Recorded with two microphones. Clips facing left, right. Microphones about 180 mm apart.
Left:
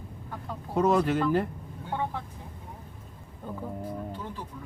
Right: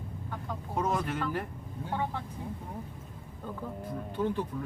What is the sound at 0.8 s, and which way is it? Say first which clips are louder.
Speech: left 8 dB; 70° left (ahead or behind).